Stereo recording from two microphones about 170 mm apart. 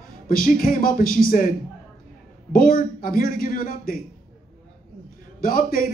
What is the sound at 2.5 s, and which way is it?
A man's voice, 55° left (ahead or behind).